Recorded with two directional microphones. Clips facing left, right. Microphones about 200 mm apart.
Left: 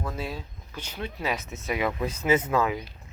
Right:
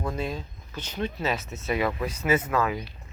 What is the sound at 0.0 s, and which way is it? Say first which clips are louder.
Speech: right 3 dB; 5° left (ahead or behind).